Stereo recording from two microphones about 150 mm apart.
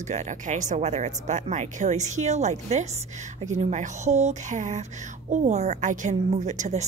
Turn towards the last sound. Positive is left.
turn(degrees=-55)  # may be behind; listen again after turning